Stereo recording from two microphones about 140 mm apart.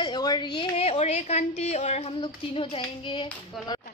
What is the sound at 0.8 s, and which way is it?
A woman's voice, 50° left (ahead or behind).